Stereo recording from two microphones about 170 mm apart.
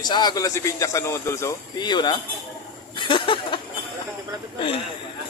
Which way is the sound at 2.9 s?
30° left (ahead or behind).